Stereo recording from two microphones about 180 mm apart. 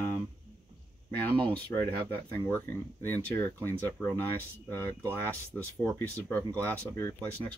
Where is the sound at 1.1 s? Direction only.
10° left (ahead or behind).